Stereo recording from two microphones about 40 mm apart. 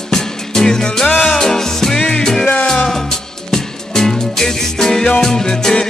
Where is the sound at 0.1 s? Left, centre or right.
Centre.